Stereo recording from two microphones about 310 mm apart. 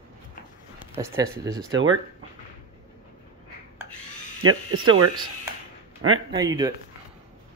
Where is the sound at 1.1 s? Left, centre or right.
Centre.